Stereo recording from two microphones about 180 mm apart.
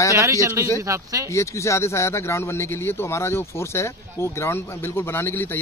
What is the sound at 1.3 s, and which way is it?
Speech, 15° left (ahead or behind).